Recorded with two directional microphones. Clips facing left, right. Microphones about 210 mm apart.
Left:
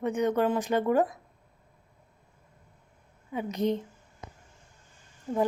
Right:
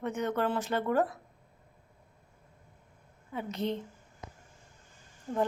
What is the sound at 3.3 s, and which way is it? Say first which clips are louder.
Speech: left 5 dB; 15° left (ahead or behind).